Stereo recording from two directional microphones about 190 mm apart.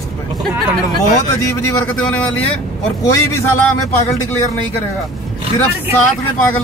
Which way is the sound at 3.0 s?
15° left (ahead or behind).